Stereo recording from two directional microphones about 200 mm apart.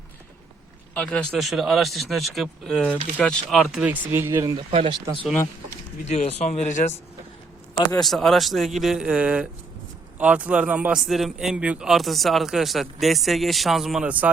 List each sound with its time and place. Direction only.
0.9 s a man's voice: 5° left (ahead or behind); by 4.6 s 15° right (ahead or behind)
4.7 s speech: 30° right (ahead or behind)
6.1 s speech: 35° left (ahead or behind)
7.9 s a man's voice: centre (ahead or behind)